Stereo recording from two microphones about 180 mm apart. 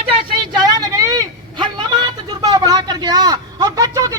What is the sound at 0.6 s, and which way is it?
Vehicle, 20° right (ahead or behind).